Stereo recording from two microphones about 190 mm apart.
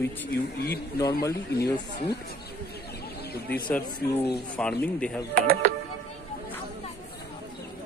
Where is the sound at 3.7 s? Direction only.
10° left (ahead or behind).